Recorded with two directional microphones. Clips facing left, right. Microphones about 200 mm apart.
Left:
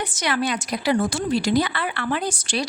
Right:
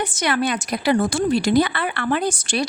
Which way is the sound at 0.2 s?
55° right (ahead or behind).